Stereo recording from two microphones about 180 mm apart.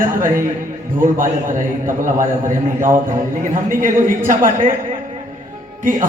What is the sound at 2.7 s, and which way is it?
Speech, 15° right (ahead or behind).